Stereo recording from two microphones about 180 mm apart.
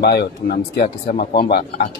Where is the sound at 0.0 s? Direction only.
60° left (ahead or behind).